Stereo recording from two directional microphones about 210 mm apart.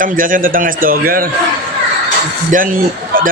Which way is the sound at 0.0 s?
40° right (ahead or behind).